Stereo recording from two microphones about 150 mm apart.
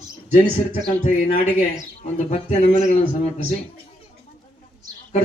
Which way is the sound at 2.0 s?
50° left (ahead or behind).